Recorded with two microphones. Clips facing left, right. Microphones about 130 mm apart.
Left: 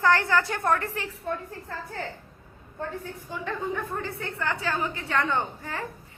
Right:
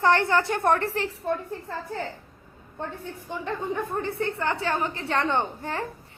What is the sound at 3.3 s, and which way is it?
A woman's voice, 25° right (ahead or behind).